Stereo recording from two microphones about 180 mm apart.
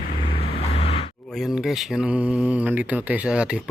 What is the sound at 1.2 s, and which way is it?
Speech, centre (ahead or behind).